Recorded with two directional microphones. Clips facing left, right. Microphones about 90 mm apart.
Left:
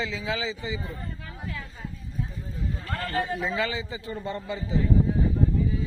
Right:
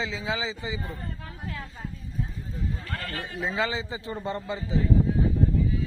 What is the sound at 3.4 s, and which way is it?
A man's voice, 20° right (ahead or behind).